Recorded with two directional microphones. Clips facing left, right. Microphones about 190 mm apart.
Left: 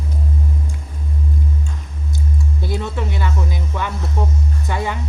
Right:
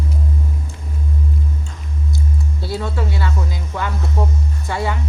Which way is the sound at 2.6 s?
20° left (ahead or behind).